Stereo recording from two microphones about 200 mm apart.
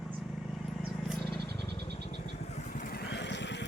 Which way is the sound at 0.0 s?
Centre (ahead or behind).